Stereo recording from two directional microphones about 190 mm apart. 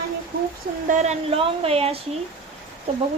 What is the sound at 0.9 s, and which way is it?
Speech, 35° right (ahead or behind).